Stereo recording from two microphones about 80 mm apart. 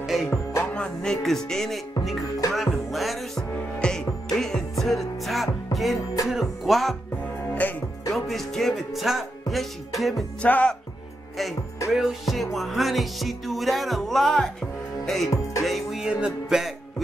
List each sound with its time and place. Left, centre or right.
0.0 s music: centre
0.6 s music: centre
7.6 s music: left
8.1 s music: centre
10.4 s speech: centre
11.9 s music: centre
15.1 s speech: centre
15.6 s music: centre